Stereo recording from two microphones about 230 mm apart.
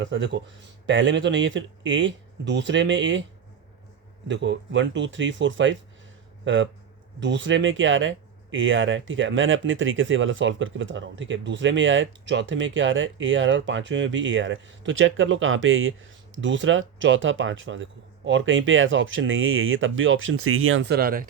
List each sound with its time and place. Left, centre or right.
0.0 s speech: right
4.3 s speech: right